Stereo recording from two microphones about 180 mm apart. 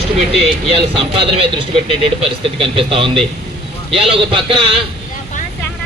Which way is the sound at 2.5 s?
30° right (ahead or behind).